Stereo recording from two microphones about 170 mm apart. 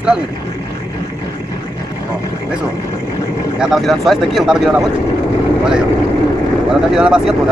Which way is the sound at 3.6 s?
Centre (ahead or behind).